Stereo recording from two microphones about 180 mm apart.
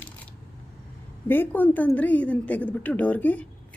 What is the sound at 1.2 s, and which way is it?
A woman's voice, 10° left (ahead or behind).